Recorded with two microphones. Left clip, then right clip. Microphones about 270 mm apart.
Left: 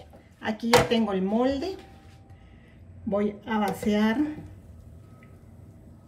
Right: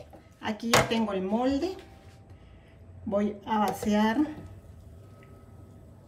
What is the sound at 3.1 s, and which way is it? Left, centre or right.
Speech, centre.